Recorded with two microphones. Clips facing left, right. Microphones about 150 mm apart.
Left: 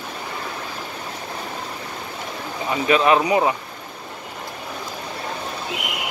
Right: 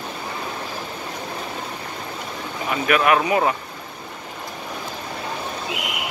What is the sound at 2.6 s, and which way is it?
Speech, 25° left (ahead or behind).